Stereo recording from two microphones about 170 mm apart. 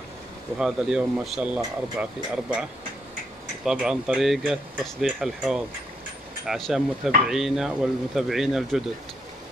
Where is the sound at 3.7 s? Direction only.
5° right (ahead or behind).